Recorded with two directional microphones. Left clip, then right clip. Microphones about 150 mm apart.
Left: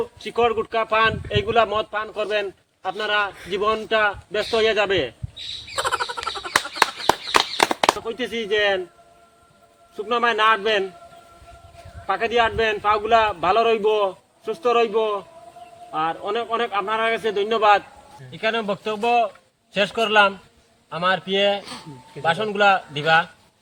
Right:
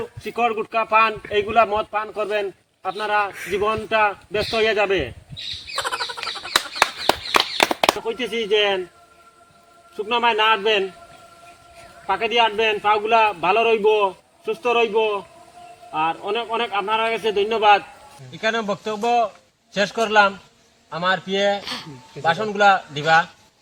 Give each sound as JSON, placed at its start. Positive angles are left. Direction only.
{"t": 0.3, "sound": "a man's voice", "side_deg": 20}
{"t": 5.7, "sound": "frog", "side_deg": 0}
{"t": 6.7, "sound": "a sound", "side_deg": -40}
{"t": 8.4, "sound": "a man's voice", "side_deg": 10}
{"t": 10.0, "sound": "a man's voice", "side_deg": 5}
{"t": 12.0, "sound": "a man's voice", "side_deg": 5}